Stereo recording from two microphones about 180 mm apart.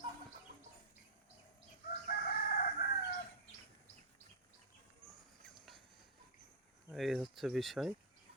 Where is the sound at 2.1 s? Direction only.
55° left (ahead or behind).